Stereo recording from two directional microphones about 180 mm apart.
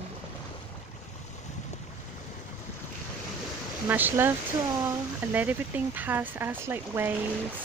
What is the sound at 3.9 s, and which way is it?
Speech, 10° right (ahead or behind).